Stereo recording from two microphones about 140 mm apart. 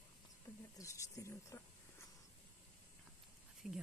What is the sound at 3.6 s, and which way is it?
Speech, 5° right (ahead or behind).